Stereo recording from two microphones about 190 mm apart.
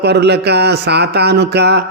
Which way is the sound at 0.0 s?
60° right (ahead or behind).